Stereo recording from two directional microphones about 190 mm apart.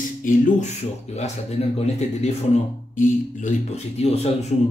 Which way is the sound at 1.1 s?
35° left (ahead or behind).